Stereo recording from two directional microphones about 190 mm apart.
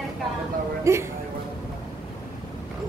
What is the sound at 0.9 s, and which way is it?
Speech, 15° right (ahead or behind).